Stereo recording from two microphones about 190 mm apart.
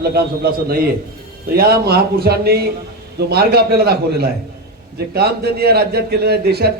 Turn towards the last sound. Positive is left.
turn(degrees=-55)  # may be behind; listen again after turning